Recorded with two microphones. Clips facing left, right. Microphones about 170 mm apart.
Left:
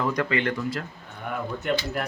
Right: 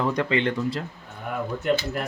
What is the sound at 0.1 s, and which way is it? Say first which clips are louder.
Speech: right 2 dB; 25° right (ahead or behind).